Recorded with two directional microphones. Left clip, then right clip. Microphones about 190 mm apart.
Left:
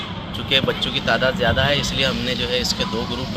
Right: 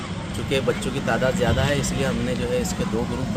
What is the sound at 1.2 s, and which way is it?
Speech, 25° right (ahead or behind).